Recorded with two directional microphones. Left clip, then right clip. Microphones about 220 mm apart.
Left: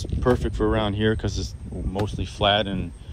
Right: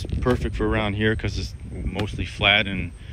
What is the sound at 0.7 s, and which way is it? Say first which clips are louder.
Speech: even; 15° right (ahead or behind).